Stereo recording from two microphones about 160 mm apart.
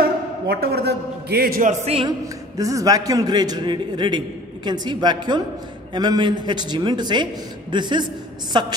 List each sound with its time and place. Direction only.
0.5 s a man's voice: 80° right
1.7 s speech: 40° right (ahead or behind)
2.0 s a man's voice: 20° right (ahead or behind)